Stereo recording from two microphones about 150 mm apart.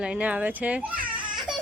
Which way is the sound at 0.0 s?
10° right (ahead or behind).